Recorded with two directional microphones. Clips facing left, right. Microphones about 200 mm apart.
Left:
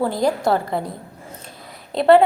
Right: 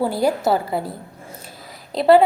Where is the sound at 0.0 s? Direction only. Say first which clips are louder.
Even; 5° right (ahead or behind).